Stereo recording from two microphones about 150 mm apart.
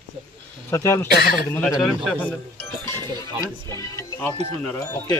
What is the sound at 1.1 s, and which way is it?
Speech, 90° left.